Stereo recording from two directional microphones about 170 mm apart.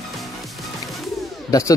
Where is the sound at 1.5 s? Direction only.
20° left (ahead or behind).